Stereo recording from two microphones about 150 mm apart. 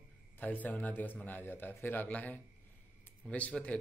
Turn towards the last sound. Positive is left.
turn(degrees=10)  # may be behind; listen again after turning